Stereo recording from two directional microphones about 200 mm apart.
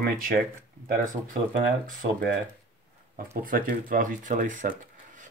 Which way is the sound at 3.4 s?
45° right (ahead or behind).